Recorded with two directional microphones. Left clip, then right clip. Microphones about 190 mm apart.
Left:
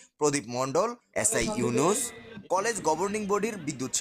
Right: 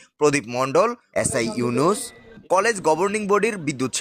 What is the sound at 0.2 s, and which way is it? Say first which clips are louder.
A man's voice: right 8 dB; 15° right (ahead or behind).